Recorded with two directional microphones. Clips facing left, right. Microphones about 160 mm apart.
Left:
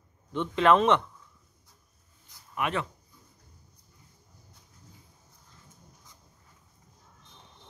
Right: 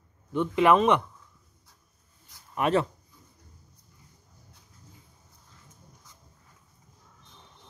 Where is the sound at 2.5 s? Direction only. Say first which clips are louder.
Right 6 dB; 35° right (ahead or behind).